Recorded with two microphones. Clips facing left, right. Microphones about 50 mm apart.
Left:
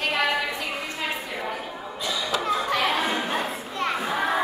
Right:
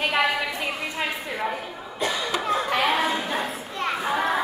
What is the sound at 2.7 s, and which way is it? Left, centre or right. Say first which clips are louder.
Chatter: right 2 dB; centre.